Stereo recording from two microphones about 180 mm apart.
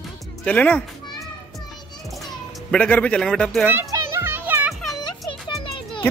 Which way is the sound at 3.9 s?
15° right (ahead or behind).